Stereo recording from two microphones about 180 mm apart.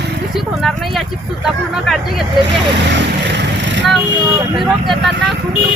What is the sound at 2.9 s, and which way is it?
Vehicle, 80° right.